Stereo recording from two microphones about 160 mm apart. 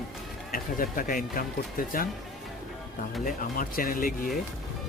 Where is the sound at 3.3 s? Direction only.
60° left (ahead or behind).